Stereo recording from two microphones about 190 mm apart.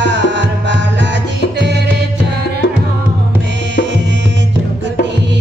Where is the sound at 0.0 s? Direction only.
65° right (ahead or behind).